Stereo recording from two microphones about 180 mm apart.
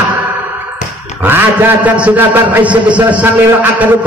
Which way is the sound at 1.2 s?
10° right (ahead or behind).